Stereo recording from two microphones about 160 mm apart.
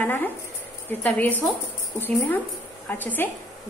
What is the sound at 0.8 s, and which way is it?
A woman's voice, 10° left (ahead or behind).